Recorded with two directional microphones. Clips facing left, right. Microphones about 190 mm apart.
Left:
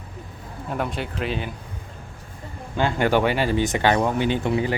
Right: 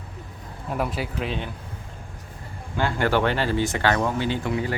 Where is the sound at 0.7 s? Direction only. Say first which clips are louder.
Even; 5° right (ahead or behind).